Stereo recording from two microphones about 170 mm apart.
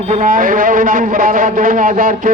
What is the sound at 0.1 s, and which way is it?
A man's voice, 55° right (ahead or behind).